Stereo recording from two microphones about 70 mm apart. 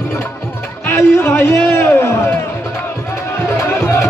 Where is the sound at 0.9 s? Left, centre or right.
Left.